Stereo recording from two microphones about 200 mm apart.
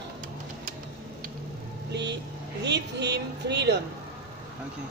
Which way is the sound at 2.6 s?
60° right (ahead or behind).